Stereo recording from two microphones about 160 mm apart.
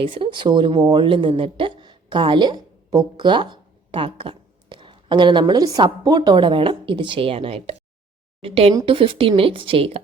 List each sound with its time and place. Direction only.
0.0 s a woman's voice: 35° right (ahead or behind)